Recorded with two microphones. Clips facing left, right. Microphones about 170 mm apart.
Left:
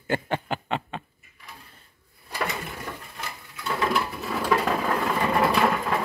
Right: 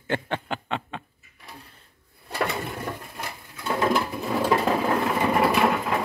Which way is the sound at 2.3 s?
30° right (ahead or behind).